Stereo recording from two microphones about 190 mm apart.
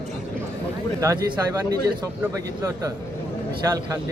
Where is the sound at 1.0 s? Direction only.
15° right (ahead or behind).